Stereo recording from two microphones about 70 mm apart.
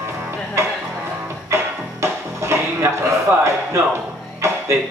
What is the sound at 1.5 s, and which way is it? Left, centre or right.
Music, right.